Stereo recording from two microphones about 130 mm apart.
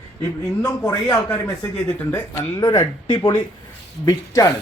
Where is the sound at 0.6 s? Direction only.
25° left (ahead or behind).